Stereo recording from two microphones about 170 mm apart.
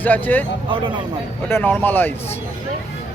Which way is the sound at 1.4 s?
10° left (ahead or behind).